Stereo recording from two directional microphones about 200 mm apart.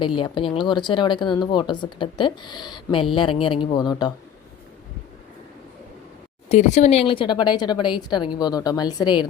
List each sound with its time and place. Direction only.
0.0 s speech: 25° left (ahead or behind)
6.5 s speech: 35° left (ahead or behind)